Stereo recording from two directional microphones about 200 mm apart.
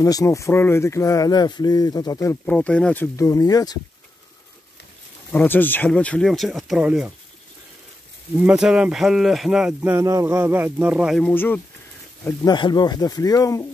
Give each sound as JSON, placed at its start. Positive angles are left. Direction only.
{"t": 0.0, "sound": "speech", "side_deg": 15}
{"t": 2.4, "sound": "speech", "side_deg": 5}
{"t": 5.3, "sound": "speech", "side_deg": 10}
{"t": 8.4, "sound": "speech", "side_deg": -5}
{"t": 12.3, "sound": "speech", "side_deg": 20}